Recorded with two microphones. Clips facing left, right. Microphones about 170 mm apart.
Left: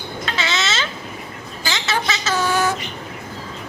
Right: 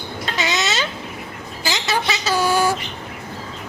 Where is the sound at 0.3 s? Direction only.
15° right (ahead or behind).